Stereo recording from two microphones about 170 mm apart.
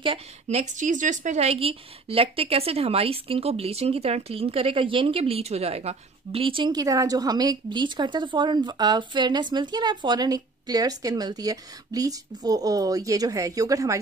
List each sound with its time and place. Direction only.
0.0 s speech: 35° right (ahead or behind)